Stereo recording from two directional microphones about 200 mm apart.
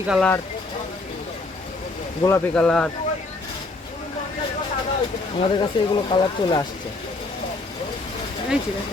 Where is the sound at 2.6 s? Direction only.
5° left (ahead or behind).